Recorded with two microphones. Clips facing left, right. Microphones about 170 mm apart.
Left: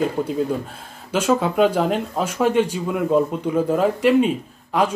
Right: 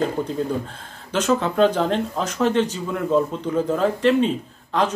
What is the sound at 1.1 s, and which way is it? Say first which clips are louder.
Speech: left 1 dB; 10° left (ahead or behind).